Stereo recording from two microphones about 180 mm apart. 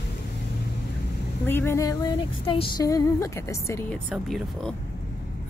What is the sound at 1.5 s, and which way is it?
Speech, 15° left (ahead or behind).